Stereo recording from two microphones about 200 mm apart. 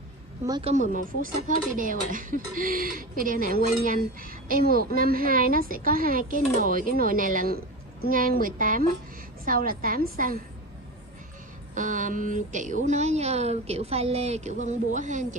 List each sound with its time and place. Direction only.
0.5 s a woman's voice: 25° right (ahead or behind)
0.7 s speech: 40° right (ahead or behind)
11.7 s speech: 40° right (ahead or behind)